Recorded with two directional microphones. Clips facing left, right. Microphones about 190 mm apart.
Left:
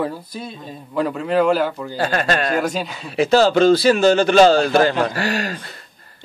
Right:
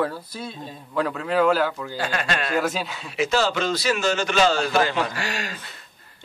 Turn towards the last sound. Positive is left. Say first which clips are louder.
# left 8 dB
turn(degrees=40)  # may be behind; listen again after turning